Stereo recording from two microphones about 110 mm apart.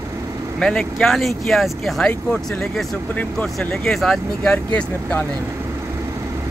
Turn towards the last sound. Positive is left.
turn(degrees=15)  # may be behind; listen again after turning